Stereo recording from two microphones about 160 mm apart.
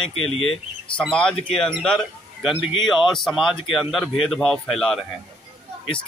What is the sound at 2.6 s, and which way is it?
Speech, 30° left (ahead or behind).